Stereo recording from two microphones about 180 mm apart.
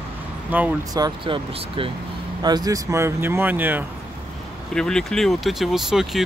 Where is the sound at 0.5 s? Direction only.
10° right (ahead or behind).